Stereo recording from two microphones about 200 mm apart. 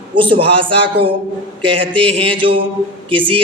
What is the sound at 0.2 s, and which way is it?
Speech, 25° right (ahead or behind).